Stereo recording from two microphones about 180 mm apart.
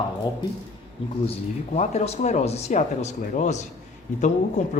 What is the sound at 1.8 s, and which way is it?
A man's voice, 35° left (ahead or behind).